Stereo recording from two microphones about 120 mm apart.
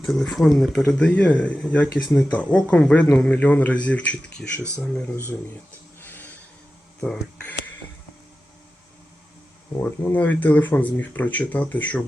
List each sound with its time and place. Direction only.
0.0 s speech: centre (ahead or behind)
6.0 s a sound: 15° left (ahead or behind)
7.0 s speech: 10° left (ahead or behind)
9.8 s speech: 15° left (ahead or behind)